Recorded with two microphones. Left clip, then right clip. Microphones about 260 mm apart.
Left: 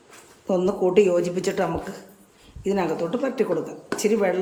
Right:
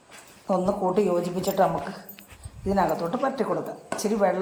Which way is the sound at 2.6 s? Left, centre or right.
Centre.